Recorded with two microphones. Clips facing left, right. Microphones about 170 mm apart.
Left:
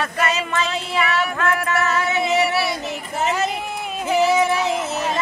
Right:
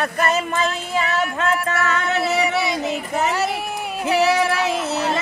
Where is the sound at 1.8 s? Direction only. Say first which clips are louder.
Even; 65° right (ahead or behind).